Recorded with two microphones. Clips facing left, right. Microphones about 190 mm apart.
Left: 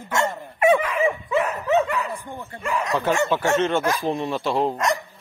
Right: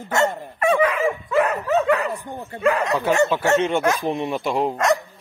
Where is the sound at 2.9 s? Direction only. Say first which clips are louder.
Right 2 dB; 10° right (ahead or behind).